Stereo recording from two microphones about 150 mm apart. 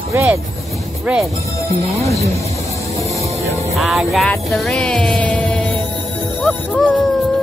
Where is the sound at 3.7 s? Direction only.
Centre (ahead or behind).